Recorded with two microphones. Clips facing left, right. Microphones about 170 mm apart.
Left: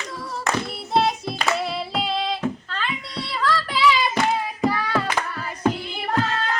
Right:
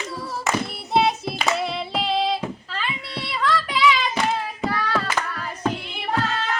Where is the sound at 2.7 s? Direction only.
5° right (ahead or behind).